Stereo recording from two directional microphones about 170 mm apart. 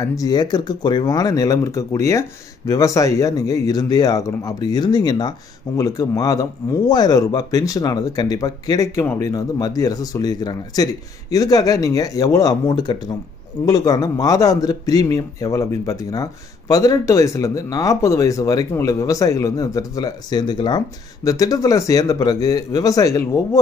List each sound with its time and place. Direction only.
0.0 s a man's voice: 20° left (ahead or behind)